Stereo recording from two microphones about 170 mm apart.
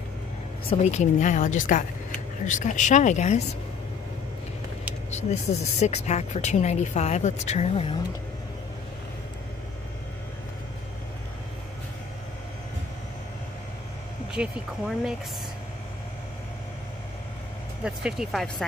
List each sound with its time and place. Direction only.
0.7 s speech: 45° left (ahead or behind)
5.1 s a woman's voice: 40° left (ahead or behind)
14.3 s speech: 5° right (ahead or behind)
17.8 s speech: 5° right (ahead or behind)